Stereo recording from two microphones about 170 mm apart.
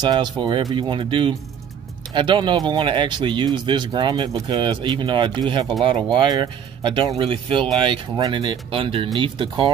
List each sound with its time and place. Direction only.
0.0 s speech: 25° right (ahead or behind)